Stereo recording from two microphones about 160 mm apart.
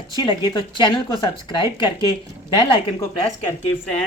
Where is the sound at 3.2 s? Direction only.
25° left (ahead or behind).